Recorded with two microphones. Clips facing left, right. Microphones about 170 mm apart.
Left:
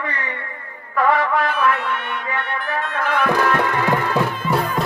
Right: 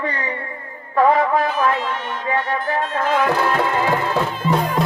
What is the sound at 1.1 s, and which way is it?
Music, 65° left (ahead or behind).